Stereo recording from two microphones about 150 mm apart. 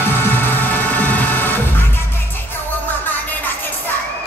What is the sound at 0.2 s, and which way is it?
Music, 15° left (ahead or behind).